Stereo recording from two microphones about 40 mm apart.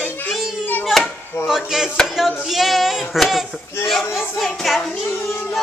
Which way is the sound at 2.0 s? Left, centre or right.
Centre.